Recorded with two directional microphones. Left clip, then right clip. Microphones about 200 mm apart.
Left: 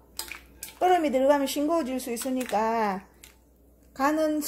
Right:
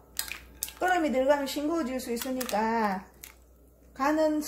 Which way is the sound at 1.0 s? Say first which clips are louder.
Left 3 dB; 45° left (ahead or behind).